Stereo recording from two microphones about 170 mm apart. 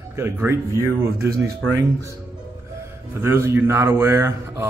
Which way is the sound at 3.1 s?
15° right (ahead or behind).